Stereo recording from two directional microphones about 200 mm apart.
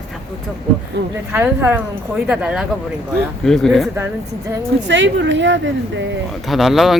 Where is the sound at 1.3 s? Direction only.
10° right (ahead or behind).